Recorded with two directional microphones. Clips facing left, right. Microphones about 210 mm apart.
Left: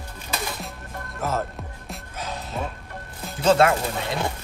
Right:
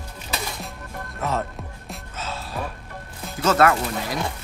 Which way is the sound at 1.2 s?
Centre (ahead or behind).